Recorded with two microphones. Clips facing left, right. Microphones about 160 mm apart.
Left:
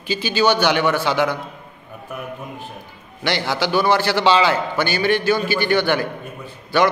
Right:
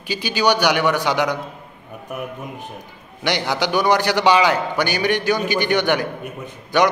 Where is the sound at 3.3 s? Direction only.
15° right (ahead or behind).